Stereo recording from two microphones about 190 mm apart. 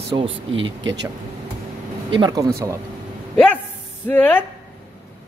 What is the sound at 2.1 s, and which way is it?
Speech, 25° right (ahead or behind).